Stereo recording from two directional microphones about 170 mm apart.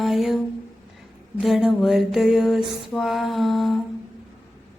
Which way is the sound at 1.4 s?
Centre (ahead or behind).